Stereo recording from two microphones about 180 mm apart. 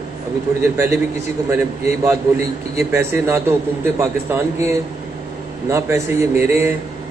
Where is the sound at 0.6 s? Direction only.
10° right (ahead or behind).